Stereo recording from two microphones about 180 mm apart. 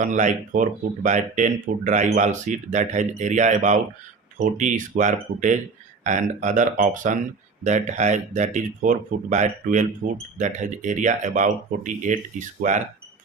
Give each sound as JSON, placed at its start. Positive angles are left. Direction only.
{"t": 0.0, "sound": "speech", "side_deg": -45}